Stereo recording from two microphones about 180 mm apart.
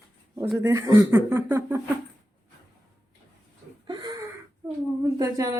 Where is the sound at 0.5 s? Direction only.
15° right (ahead or behind).